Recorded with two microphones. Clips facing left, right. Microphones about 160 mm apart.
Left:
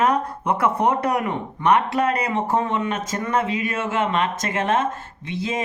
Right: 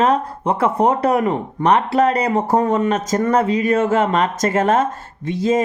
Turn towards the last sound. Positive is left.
turn(degrees=-45)  # may be behind; listen again after turning